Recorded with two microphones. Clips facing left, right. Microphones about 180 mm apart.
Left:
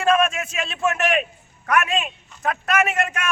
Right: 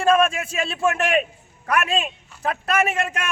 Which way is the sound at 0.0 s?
30° right (ahead or behind).